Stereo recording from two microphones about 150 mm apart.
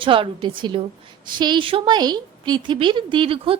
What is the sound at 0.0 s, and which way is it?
A woman's voice, 35° right (ahead or behind).